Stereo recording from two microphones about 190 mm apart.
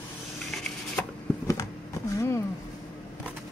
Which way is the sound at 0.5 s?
5° left (ahead or behind).